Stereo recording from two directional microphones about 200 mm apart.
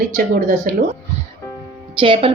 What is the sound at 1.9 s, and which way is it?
Speech, 25° right (ahead or behind).